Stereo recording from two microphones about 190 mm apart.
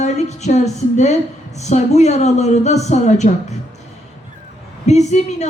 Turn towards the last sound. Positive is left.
turn(degrees=35)  # may be behind; listen again after turning